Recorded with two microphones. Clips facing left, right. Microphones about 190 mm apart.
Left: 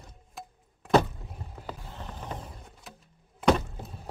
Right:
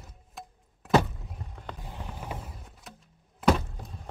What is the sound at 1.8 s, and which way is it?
Mechanisms, 10° right (ahead or behind).